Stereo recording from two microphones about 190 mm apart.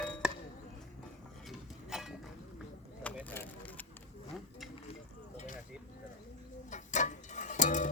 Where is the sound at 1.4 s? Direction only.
Centre (ahead or behind).